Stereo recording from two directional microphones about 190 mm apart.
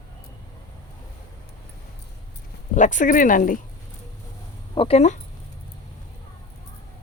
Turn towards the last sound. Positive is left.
turn(degrees=35)  # may be behind; listen again after turning